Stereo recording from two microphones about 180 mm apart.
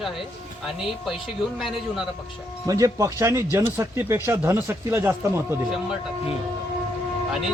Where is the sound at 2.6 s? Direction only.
20° right (ahead or behind).